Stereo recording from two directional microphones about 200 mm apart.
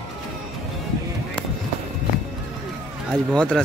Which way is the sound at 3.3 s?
5° left (ahead or behind).